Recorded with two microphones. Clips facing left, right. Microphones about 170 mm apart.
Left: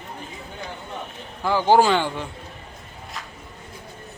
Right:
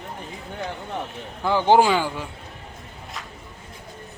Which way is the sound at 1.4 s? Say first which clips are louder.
Even; 20° right (ahead or behind).